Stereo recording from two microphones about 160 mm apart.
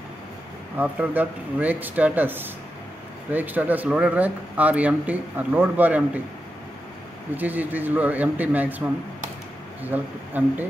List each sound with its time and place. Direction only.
0.7 s speech: 10° right (ahead or behind)
7.3 s speech: 10° right (ahead or behind)